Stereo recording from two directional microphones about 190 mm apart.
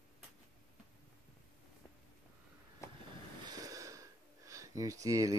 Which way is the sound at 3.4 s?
20° right (ahead or behind).